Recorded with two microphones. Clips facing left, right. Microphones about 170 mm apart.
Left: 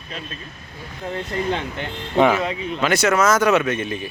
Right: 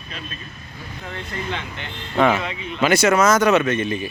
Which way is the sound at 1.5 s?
45° left (ahead or behind).